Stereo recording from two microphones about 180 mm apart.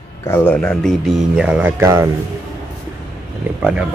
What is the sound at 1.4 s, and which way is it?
Speech, 10° right (ahead or behind).